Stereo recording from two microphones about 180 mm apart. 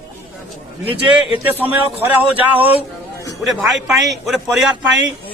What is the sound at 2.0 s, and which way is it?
A man's voice, 10° right (ahead or behind).